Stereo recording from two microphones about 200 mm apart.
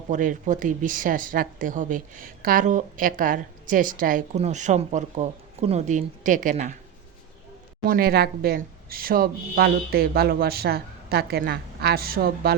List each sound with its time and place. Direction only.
0.1 s speech: 40° right (ahead or behind)
7.9 s a woman's voice: 50° right (ahead or behind)